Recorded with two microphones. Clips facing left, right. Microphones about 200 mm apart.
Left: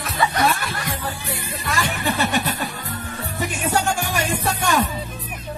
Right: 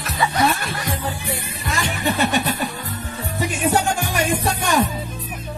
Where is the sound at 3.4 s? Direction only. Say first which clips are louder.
Right 3 dB; 15° right (ahead or behind).